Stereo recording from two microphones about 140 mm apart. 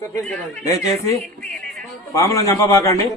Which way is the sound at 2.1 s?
25° left (ahead or behind).